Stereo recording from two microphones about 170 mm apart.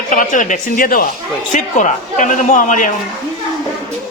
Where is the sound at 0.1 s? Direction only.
50° left (ahead or behind).